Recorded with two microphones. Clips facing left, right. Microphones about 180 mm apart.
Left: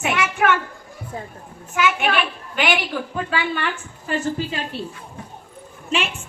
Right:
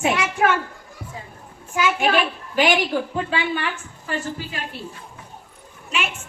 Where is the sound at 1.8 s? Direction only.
30° right (ahead or behind).